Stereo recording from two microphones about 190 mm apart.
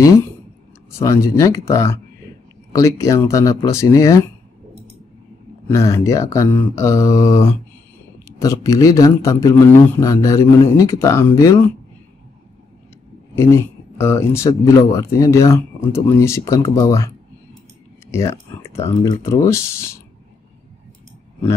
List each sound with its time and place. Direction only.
0.9 s speech: 15° left (ahead or behind)
5.7 s speech: 15° left (ahead or behind)
13.3 s speech: 15° left (ahead or behind)
18.1 s speech: 15° left (ahead or behind)